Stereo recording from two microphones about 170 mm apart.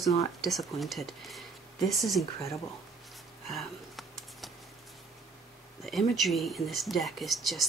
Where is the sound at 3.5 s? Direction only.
Centre (ahead or behind).